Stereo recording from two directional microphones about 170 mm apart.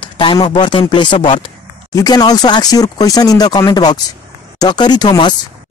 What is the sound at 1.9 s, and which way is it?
Speech, 20° left (ahead or behind).